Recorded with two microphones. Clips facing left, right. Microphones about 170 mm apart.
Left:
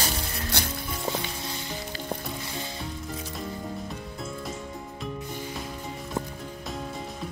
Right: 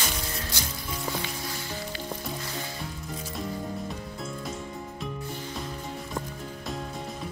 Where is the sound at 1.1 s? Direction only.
20° left (ahead or behind).